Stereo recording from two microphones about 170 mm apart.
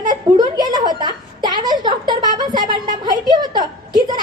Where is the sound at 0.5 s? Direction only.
25° right (ahead or behind).